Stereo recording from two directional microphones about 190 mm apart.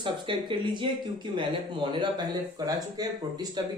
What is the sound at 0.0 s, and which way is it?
Speech, 25° right (ahead or behind).